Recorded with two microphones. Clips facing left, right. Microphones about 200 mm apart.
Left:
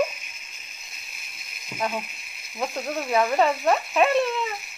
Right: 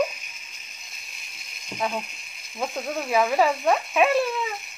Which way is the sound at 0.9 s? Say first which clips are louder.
Left 1 dB; centre (ahead or behind).